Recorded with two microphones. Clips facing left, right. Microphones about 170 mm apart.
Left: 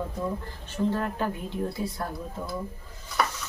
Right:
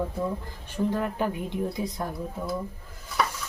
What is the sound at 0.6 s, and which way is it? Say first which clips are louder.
Speech: even; 15° right (ahead or behind).